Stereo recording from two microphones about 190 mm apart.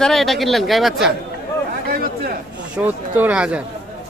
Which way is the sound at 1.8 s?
55° right (ahead or behind).